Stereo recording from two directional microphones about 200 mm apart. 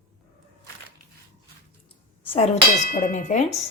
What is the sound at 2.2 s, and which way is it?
A woman's voice, 30° left (ahead or behind).